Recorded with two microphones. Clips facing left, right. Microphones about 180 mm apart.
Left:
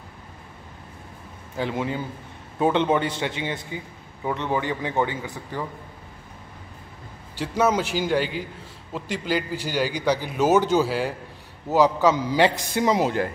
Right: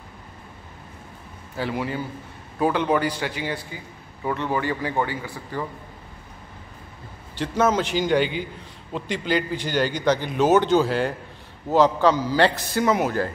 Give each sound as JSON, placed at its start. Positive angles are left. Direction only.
{"t": 1.6, "sound": "speech", "side_deg": 20}
{"t": 7.3, "sound": "a man's voice", "side_deg": 10}